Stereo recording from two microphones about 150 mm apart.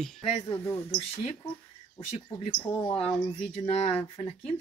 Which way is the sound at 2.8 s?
5° left (ahead or behind).